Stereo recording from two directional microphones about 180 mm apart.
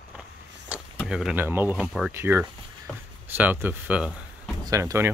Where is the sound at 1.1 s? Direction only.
5° right (ahead or behind).